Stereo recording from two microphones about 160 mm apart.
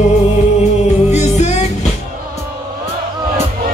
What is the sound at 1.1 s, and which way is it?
Music, 45° left (ahead or behind).